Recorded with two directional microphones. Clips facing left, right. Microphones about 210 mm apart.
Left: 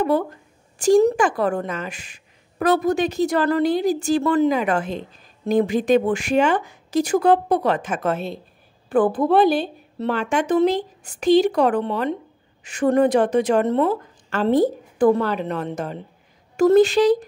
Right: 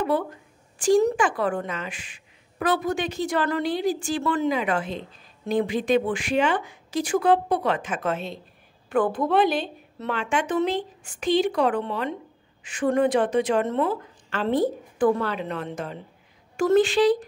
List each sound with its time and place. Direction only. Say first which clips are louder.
0.0 s a woman's voice: left 4 dB; 40° left (ahead or behind)